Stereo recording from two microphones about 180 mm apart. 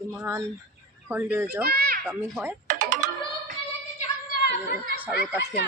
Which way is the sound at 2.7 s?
45° right (ahead or behind).